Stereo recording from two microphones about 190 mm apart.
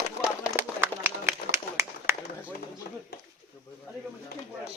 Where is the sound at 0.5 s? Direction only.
10° right (ahead or behind).